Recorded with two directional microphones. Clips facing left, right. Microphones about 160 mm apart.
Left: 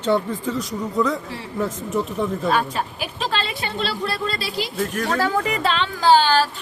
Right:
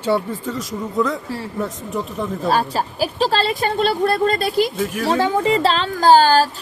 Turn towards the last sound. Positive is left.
turn(degrees=-40)  # may be behind; listen again after turning